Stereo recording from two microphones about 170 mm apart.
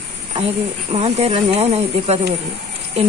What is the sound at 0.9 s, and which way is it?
Speech, 35° right (ahead or behind).